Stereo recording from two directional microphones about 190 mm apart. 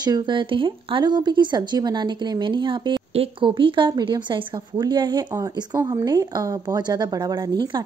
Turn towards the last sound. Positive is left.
turn(degrees=-20)  # may be behind; listen again after turning